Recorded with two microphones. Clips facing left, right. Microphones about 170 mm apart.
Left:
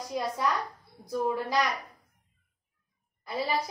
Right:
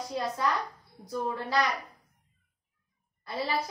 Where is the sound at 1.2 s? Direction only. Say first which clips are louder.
Left 1 dB; 10° left (ahead or behind).